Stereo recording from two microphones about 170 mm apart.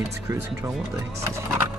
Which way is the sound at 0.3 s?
20° right (ahead or behind).